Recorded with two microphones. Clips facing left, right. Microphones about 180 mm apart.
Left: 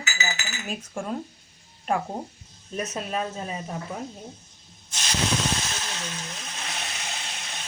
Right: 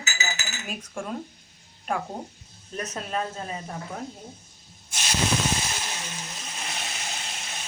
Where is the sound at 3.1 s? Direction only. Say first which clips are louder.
Right 1 dB; 10° left (ahead or behind).